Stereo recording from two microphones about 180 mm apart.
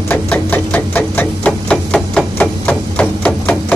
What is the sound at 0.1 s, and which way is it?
Hammer, 10° left (ahead or behind).